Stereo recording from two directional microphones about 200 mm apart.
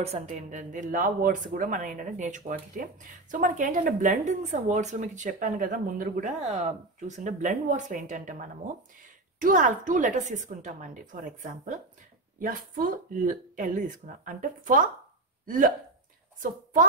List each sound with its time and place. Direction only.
0.0 s speech: 35° right (ahead or behind)